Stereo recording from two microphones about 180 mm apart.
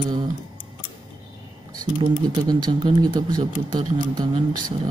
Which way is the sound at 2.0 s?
25° right (ahead or behind).